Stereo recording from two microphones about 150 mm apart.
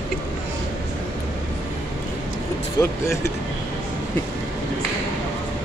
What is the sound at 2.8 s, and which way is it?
Speech, 25° left (ahead or behind).